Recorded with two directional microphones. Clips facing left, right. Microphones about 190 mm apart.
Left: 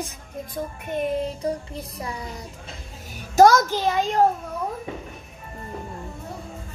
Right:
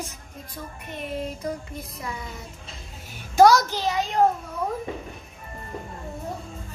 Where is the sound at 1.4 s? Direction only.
35° left (ahead or behind).